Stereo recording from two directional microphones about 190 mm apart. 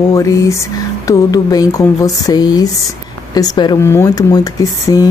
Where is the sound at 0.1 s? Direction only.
15° left (ahead or behind).